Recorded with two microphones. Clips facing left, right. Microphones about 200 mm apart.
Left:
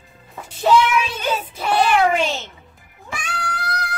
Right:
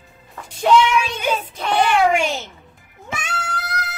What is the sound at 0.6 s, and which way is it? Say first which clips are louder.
Speech: right 1 dB; 5° left (ahead or behind).